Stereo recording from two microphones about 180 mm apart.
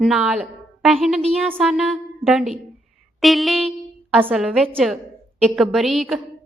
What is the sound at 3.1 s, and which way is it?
Music, centre (ahead or behind).